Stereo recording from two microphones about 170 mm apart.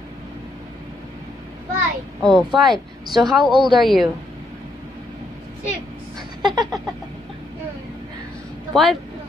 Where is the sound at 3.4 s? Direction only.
25° right (ahead or behind).